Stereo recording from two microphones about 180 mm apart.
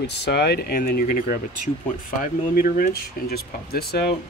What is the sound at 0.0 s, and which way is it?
Speech, 70° left (ahead or behind).